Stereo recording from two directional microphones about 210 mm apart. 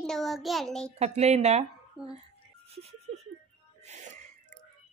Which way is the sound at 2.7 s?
30° right (ahead or behind).